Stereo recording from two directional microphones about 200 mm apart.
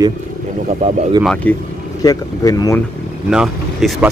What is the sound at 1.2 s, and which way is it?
Speech, 5° left (ahead or behind).